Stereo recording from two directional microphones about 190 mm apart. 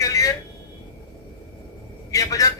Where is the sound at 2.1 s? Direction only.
20° left (ahead or behind).